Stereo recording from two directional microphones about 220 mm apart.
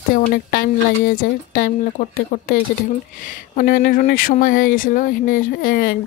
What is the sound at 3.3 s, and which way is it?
Speech, 40° left (ahead or behind).